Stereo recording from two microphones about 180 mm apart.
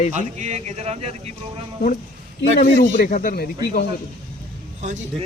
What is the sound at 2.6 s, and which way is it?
Speech, 45° left (ahead or behind).